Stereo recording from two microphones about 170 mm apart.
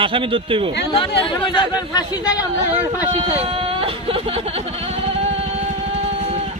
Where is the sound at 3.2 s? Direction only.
35° right (ahead or behind).